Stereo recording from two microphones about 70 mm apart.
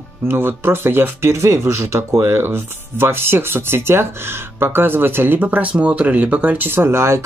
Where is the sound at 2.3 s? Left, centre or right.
Right.